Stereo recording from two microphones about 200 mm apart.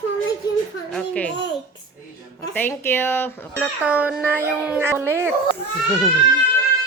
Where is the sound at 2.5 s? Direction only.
10° left (ahead or behind).